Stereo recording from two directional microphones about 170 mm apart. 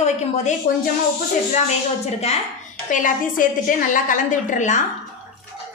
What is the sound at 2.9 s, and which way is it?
A woman's voice, 50° left (ahead or behind).